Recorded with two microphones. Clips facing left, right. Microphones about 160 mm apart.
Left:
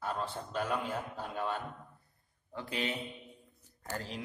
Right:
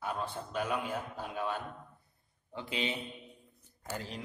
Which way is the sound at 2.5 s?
20° right (ahead or behind).